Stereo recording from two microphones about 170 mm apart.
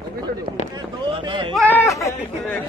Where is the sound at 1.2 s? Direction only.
30° right (ahead or behind).